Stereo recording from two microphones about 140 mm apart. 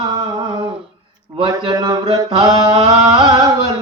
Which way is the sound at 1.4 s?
30° right (ahead or behind).